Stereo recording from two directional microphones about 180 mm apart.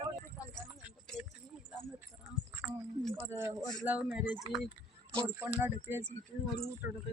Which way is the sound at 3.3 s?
15° right (ahead or behind).